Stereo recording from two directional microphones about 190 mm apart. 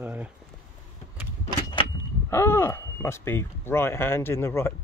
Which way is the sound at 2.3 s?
15° left (ahead or behind).